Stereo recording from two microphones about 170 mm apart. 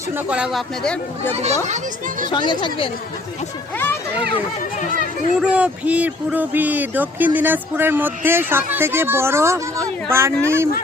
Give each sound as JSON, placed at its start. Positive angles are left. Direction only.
{"t": 0.3, "sound": "speech", "side_deg": -5}
{"t": 1.3, "sound": "a child's voice", "side_deg": -40}
{"t": 2.3, "sound": "speech", "side_deg": 25}
{"t": 5.4, "sound": "speech", "side_deg": -5}